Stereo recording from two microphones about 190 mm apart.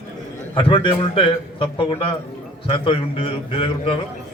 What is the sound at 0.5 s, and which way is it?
A man's voice, 25° left (ahead or behind).